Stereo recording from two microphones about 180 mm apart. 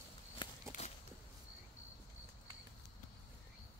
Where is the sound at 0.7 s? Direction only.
45° left (ahead or behind).